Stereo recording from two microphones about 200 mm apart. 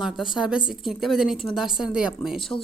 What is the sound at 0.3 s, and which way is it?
A woman's voice, 5° right (ahead or behind).